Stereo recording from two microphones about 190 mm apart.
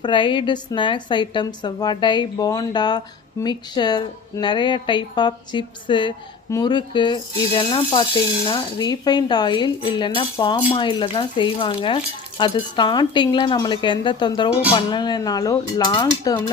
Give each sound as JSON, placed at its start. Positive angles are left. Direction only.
{"t": 0.0, "sound": "a woman's voice", "side_deg": 25}